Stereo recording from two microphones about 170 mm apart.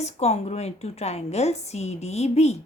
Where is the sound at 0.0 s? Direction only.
40° left (ahead or behind).